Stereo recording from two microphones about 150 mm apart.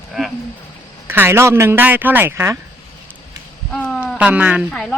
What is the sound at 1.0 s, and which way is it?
Speech, 15° right (ahead or behind).